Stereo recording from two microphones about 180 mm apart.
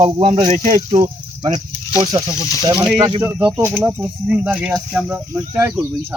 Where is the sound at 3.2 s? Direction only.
10° right (ahead or behind).